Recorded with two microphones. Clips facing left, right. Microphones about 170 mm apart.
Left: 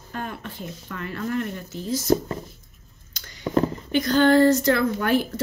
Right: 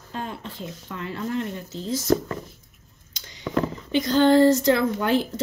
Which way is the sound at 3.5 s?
30° left (ahead or behind).